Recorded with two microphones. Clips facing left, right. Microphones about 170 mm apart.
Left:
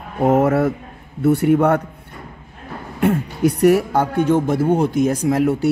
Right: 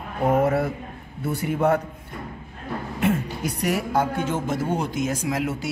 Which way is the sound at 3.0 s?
65° left (ahead or behind).